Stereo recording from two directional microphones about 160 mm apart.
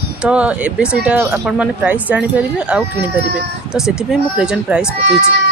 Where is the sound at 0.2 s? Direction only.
5° right (ahead or behind).